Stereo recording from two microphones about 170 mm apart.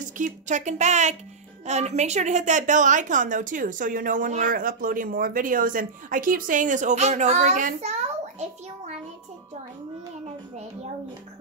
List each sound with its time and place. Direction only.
0.0 s a woman's voice: 45° right (ahead or behind)